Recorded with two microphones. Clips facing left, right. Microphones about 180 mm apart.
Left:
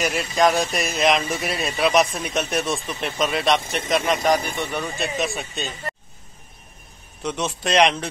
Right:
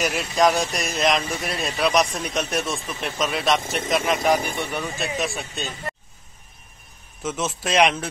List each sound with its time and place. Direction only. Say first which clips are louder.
0.0 s speech: even; centre (ahead or behind)
7.2 s speech: left 1 dB; 5° right (ahead or behind)